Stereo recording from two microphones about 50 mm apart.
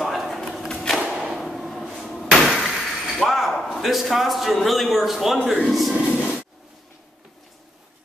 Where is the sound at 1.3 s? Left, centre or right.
Centre.